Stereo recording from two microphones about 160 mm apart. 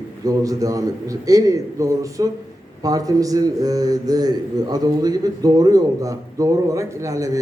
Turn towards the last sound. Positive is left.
turn(degrees=-20)  # may be behind; listen again after turning